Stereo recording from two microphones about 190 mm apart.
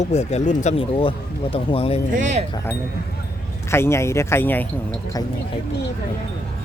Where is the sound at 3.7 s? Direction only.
15° left (ahead or behind).